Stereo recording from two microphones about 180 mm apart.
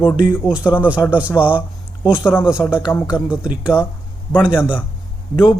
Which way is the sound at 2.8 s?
20° left (ahead or behind).